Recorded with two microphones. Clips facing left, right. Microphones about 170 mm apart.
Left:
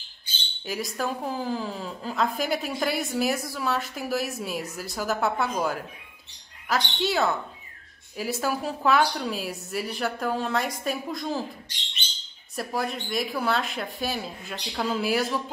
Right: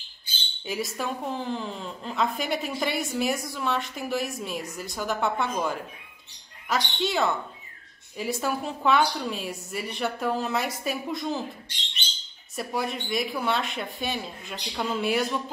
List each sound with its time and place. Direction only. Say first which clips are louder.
0.7 s a woman's voice: left 1 dB; centre (ahead or behind)
12.5 s a woman's voice: even; centre (ahead or behind)